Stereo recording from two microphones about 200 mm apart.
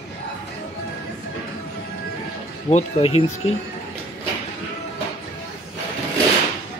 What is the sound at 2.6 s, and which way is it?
Speech, 30° left (ahead or behind).